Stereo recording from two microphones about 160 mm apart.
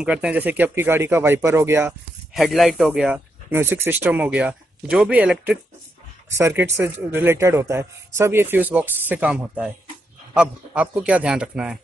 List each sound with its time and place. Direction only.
0.0 s speech: 5° right (ahead or behind)
2.3 s a man's voice: centre (ahead or behind)